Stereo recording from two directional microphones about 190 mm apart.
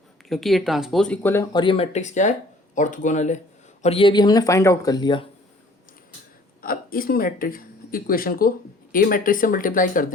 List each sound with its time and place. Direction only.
0.3 s speech: centre (ahead or behind)
1.6 s speech: 30° left (ahead or behind)
3.8 s speech: 30° left (ahead or behind)
6.6 s speech: 50° left (ahead or behind)